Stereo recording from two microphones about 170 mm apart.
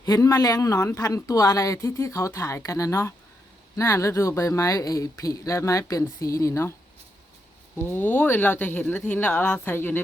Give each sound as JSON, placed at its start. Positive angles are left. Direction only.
{"t": 0.0, "sound": "speech", "side_deg": 20}
{"t": 7.9, "sound": "speech", "side_deg": 10}